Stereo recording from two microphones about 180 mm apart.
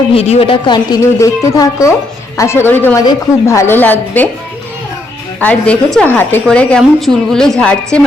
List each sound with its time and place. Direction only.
0.1 s a woman's voice: 35° left (ahead or behind); by 4.3 s 10° left (ahead or behind)
5.4 s a woman's voice: 5° left (ahead or behind)